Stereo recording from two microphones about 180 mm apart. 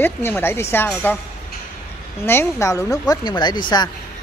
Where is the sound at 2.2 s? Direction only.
15° left (ahead or behind).